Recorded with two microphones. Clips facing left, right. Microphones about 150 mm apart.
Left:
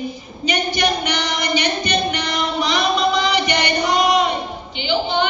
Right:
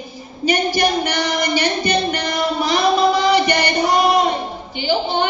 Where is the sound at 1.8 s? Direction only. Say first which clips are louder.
Right 2 dB; 45° right (ahead or behind).